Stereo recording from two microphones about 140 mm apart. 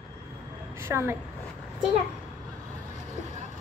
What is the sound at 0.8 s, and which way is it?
Speech, 20° right (ahead or behind).